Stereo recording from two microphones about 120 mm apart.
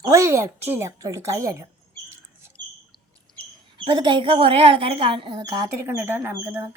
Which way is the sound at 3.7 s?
45° right (ahead or behind).